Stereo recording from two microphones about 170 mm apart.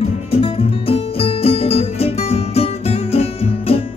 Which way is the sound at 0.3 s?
35° left (ahead or behind).